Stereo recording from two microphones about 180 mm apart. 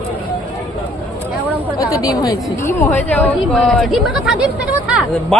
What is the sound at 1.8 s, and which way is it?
A woman's voice, 20° left (ahead or behind).